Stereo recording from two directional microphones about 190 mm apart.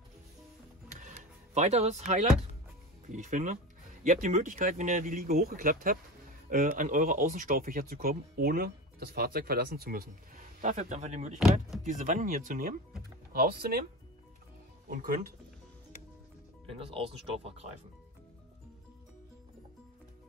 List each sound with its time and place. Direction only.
0.8 s music: 40° right (ahead or behind)
3.1 s speech: 40° right (ahead or behind)
14.9 s speech: 45° right (ahead or behind)
16.7 s speech: 30° right (ahead or behind)